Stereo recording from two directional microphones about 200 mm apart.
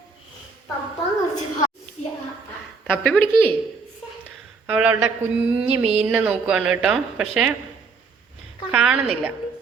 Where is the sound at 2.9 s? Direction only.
5° left (ahead or behind).